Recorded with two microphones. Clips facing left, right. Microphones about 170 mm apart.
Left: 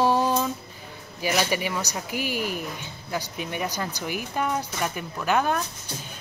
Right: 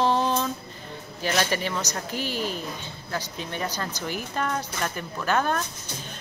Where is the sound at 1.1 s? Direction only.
10° left (ahead or behind).